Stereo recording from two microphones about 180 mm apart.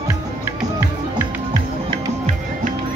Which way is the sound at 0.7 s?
20° right (ahead or behind).